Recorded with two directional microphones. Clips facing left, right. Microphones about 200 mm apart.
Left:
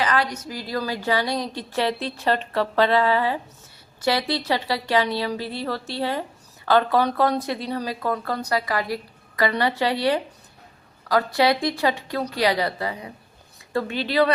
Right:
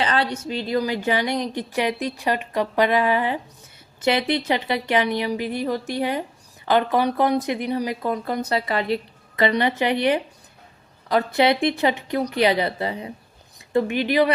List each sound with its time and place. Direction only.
0.0 s a woman's voice: 30° right (ahead or behind)